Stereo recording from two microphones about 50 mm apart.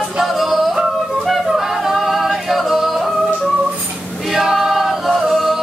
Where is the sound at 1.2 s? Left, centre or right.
Centre.